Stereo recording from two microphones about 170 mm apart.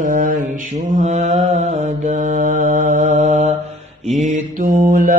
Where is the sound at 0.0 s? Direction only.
50° right (ahead or behind).